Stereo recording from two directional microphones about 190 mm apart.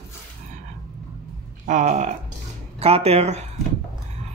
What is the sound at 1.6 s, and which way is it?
Speech, 40° right (ahead or behind).